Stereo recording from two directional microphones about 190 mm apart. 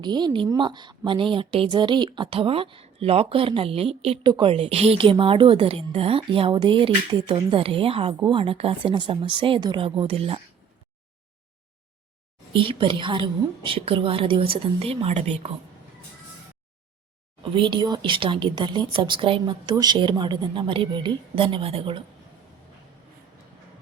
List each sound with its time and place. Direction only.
0.0 s a woman's voice: 25° right (ahead or behind)
12.5 s a woman's voice: 25° right (ahead or behind)
17.5 s a woman's voice: 25° right (ahead or behind)